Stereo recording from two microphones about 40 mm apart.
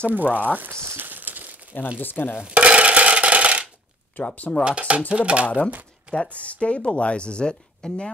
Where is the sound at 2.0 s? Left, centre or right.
Left.